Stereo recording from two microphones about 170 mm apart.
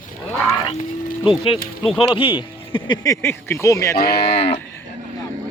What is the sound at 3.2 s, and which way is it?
Speech, 15° left (ahead or behind).